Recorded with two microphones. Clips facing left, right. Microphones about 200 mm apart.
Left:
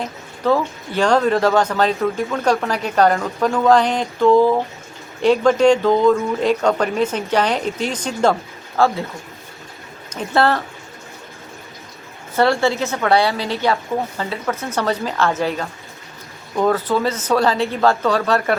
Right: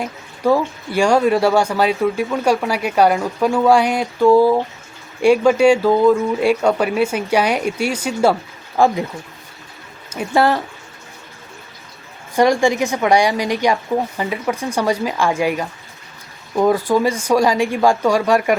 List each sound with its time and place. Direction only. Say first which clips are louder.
0.0 s speech: right 2 dB; 10° right (ahead or behind)
10.1 s speech: right 1 dB; 10° right (ahead or behind)
12.4 s speech: right 2 dB; 15° right (ahead or behind)